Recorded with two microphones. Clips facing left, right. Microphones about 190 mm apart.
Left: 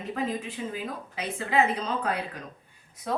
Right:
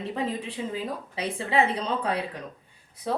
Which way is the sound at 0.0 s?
30° right (ahead or behind).